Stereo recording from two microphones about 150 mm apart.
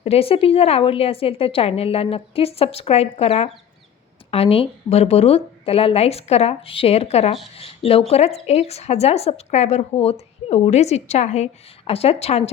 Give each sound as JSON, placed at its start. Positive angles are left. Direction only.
{"t": 0.0, "sound": "a woman's voice", "side_deg": 40}